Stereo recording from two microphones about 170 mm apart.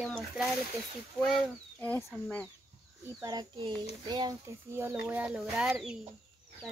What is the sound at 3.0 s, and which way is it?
Speech, 20° right (ahead or behind).